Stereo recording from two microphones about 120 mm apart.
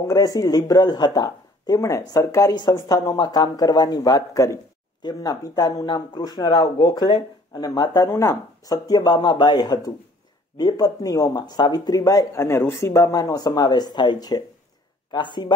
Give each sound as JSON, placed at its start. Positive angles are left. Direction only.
{"t": 0.0, "sound": "speech", "side_deg": 30}
{"t": 8.1, "sound": "speech", "side_deg": 20}
{"t": 8.6, "sound": "speech", "side_deg": 30}